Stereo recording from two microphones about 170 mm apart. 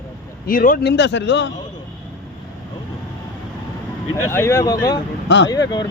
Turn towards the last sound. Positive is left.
turn(degrees=20)  # may be behind; listen again after turning